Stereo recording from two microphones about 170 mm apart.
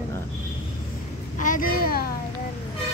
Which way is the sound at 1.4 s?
55° left (ahead or behind).